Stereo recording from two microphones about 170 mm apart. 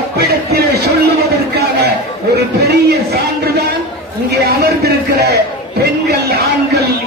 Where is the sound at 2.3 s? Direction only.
70° right (ahead or behind).